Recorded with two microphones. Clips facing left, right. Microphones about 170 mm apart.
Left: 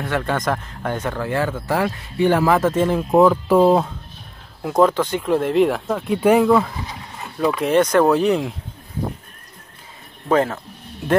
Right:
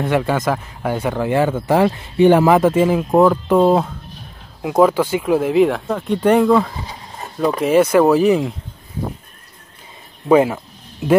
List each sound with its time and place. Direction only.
0.0 s speech: 10° right (ahead or behind)
6.8 s a sound: 30° right (ahead or behind)
7.6 s speech: 5° right (ahead or behind)
10.2 s speech: 10° right (ahead or behind)